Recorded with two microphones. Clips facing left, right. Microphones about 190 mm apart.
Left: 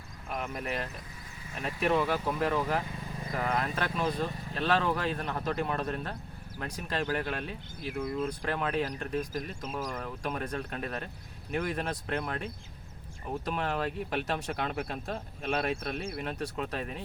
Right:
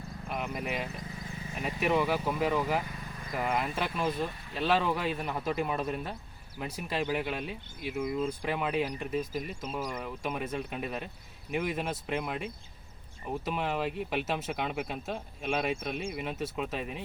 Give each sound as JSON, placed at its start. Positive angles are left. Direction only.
{"t": 0.3, "sound": "speech", "side_deg": -10}